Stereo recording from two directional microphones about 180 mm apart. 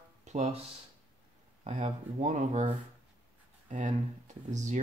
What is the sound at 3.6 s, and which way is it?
Speech, 40° right (ahead or behind).